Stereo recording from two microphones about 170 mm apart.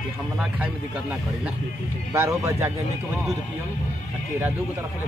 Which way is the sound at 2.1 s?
15° right (ahead or behind).